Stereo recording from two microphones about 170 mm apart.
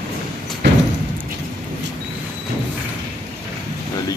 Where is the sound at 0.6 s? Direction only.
90° right.